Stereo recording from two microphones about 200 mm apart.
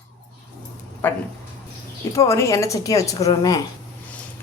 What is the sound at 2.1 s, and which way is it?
A woman's voice, 15° left (ahead or behind).